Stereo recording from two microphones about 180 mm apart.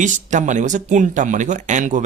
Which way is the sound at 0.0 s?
45° right (ahead or behind).